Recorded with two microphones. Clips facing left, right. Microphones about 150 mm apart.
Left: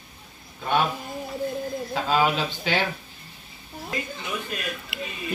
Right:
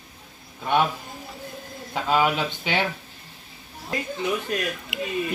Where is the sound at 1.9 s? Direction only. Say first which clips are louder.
Right 1 dB; 15° right (ahead or behind).